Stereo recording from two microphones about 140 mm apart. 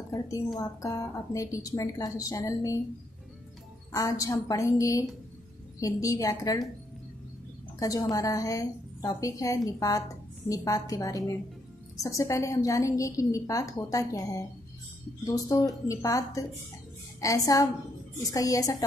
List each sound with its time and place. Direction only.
0.6 s a woman's voice: 25° left (ahead or behind)
3.9 s a woman's voice: 25° left (ahead or behind)
7.8 s a woman's voice: 25° left (ahead or behind)